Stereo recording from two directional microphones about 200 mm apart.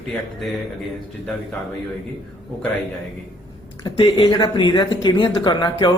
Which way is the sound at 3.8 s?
25° left (ahead or behind).